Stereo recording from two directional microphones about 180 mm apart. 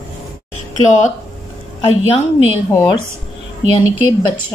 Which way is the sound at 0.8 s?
40° left (ahead or behind).